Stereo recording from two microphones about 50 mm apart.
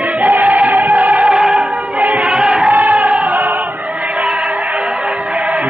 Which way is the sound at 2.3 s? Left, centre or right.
Centre.